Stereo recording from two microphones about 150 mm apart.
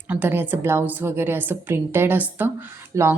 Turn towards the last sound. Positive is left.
turn(degrees=-15)  # may be behind; listen again after turning